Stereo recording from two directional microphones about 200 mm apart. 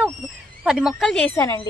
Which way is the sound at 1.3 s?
15° left (ahead or behind).